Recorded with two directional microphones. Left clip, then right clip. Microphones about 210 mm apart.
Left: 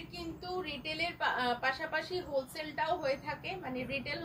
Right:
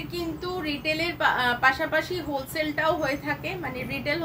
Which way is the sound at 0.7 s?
15° right (ahead or behind).